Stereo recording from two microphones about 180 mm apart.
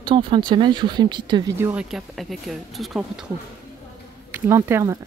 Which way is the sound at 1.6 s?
5° right (ahead or behind).